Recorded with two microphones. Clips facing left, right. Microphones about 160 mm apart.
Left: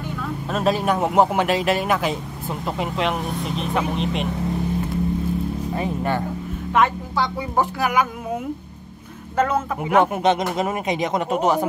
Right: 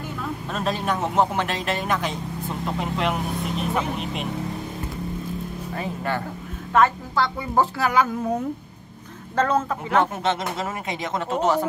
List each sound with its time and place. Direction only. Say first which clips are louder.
0.5 s speech: left 6 dB; 5° left (ahead or behind)
5.8 s speech: left 3 dB; 20° left (ahead or behind)
9.4 s speech: left 1 dB; 10° left (ahead or behind)